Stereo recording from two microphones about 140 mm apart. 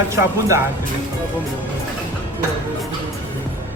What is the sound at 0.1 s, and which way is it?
Speech, 20° right (ahead or behind).